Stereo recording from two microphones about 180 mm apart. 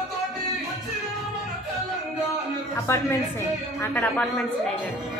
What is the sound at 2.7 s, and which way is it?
A woman's voice, 15° left (ahead or behind).